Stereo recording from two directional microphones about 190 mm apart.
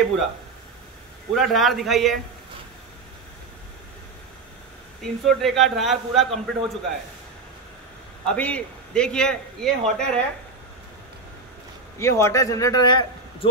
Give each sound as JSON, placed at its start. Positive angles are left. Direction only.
{"t": 1.3, "sound": "a man's voice", "side_deg": 0}
{"t": 5.2, "sound": "a man's voice", "side_deg": 0}
{"t": 8.3, "sound": "a man's voice", "side_deg": 5}
{"t": 12.0, "sound": "a man's voice", "side_deg": 15}